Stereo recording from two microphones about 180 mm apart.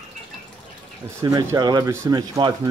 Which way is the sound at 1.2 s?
20° right (ahead or behind).